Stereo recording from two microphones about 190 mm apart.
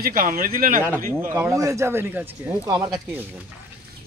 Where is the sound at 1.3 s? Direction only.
15° right (ahead or behind).